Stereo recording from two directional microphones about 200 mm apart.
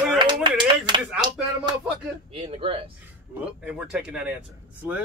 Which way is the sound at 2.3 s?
30° right (ahead or behind).